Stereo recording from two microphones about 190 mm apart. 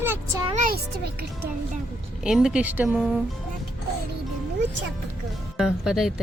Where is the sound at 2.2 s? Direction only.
5° right (ahead or behind).